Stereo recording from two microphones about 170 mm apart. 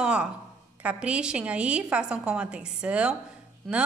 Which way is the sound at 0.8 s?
5° right (ahead or behind).